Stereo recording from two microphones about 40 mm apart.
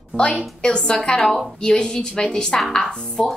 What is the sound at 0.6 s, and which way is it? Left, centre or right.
Speech, left.